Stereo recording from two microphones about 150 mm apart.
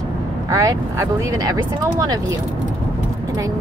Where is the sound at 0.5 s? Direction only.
20° right (ahead or behind).